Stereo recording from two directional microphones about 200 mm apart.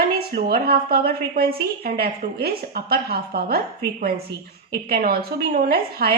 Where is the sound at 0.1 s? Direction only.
50° right (ahead or behind).